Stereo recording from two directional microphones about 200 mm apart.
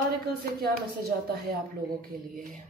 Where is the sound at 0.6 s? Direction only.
50° right (ahead or behind).